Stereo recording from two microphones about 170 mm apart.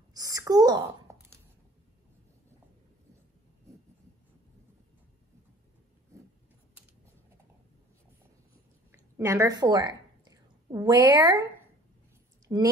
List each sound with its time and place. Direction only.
0.1 s a sound: 20° right (ahead or behind)
9.1 s a woman's voice: 20° right (ahead or behind)
12.5 s speech: 20° right (ahead or behind)